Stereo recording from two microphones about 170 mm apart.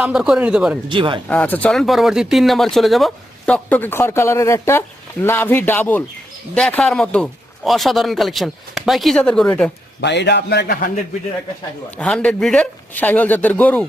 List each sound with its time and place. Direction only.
0.0 s speech: 5° right (ahead or behind)
0.9 s speech: 30° right (ahead or behind)
1.3 s speech: 10° left (ahead or behind)
10.0 s a man's voice: 90° left
11.9 s speech: 5° left (ahead or behind)